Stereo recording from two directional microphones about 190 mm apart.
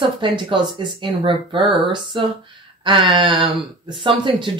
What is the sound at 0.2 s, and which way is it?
Speech, 25° right (ahead or behind).